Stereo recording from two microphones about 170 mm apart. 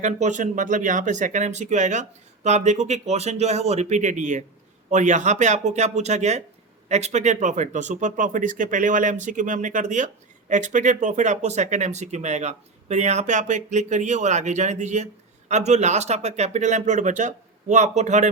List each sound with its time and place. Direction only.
0.0 s speech: 45° right (ahead or behind)